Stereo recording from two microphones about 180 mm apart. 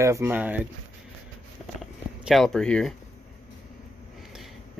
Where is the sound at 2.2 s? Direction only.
Centre (ahead or behind).